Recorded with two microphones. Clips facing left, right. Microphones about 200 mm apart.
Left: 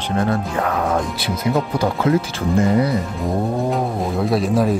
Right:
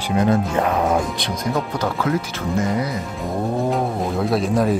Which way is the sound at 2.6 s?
30° left (ahead or behind).